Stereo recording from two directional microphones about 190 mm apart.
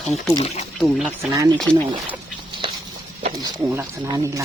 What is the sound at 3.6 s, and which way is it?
Speech, 15° right (ahead or behind).